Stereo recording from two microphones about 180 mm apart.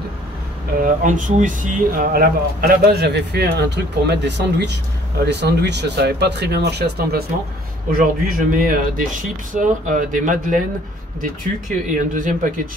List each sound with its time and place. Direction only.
0.8 s speech: 45° right (ahead or behind); by 7.2 s 60° right (ahead or behind)
7.9 s speech: 50° right (ahead or behind)